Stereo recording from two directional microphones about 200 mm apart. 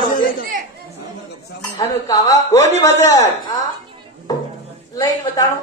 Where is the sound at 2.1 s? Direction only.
15° left (ahead or behind).